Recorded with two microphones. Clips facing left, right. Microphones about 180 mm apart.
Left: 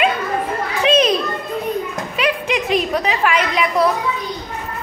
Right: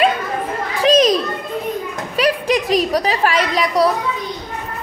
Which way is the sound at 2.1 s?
35° right (ahead or behind).